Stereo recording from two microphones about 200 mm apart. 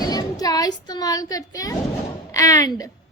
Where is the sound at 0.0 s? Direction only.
20° left (ahead or behind).